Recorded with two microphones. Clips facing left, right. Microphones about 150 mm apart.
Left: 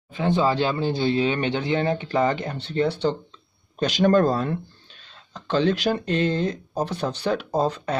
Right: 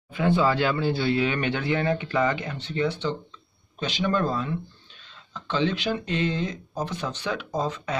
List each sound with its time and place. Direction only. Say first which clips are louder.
0.1 s speech: left 1 dB; 25° left (ahead or behind)